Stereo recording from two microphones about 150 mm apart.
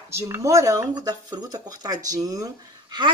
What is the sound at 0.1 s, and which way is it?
A woman's voice, 20° right (ahead or behind).